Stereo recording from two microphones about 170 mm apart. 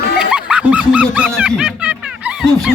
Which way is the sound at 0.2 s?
5° right (ahead or behind).